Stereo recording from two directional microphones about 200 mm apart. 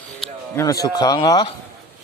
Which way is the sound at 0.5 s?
15° left (ahead or behind).